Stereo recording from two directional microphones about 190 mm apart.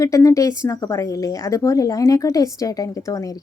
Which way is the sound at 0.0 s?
15° left (ahead or behind).